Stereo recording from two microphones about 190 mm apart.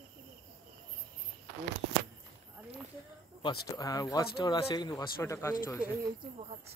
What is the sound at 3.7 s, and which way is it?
Speech, 20° left (ahead or behind).